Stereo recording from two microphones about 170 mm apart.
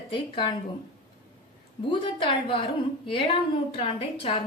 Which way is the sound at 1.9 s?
30° left (ahead or behind).